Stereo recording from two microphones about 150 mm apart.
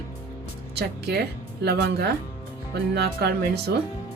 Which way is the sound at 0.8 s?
90° right.